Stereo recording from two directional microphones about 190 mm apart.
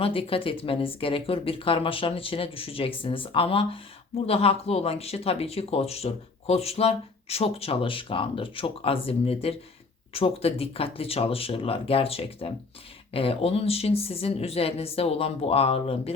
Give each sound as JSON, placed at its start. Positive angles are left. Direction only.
{"t": 0.0, "sound": "speech", "side_deg": 30}